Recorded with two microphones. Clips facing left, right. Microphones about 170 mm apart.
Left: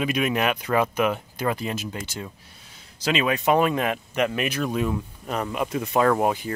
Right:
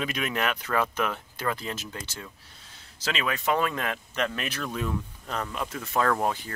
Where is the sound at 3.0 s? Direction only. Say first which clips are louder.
Left 7 dB; 20° left (ahead or behind).